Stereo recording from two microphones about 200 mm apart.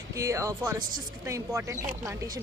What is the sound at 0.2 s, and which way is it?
Speech, 15° right (ahead or behind).